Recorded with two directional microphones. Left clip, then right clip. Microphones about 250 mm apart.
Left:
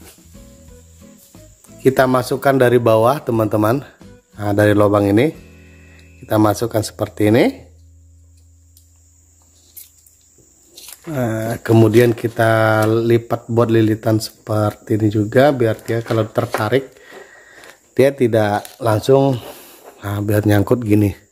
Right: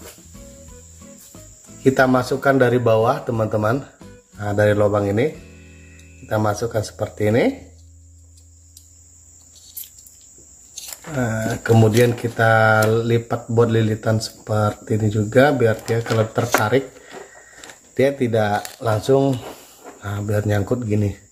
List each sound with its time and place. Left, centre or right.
1.0 s music: centre
1.8 s speech: left
5.4 s music: centre
6.2 s speech: left
11.1 s speech: left